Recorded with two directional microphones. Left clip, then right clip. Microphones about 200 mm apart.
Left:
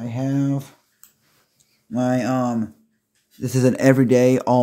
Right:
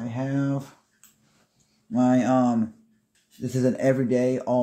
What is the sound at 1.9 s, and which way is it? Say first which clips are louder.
Speech: even; 20° left (ahead or behind).